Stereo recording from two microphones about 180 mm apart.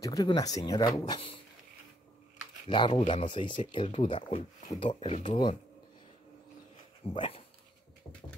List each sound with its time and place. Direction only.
0.0 s speech: 20° left (ahead or behind)
2.7 s speech: 25° left (ahead or behind)
7.2 s speech: 30° left (ahead or behind)